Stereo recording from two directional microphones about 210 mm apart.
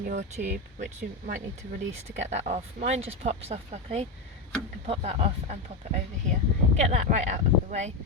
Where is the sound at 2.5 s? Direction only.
30° right (ahead or behind).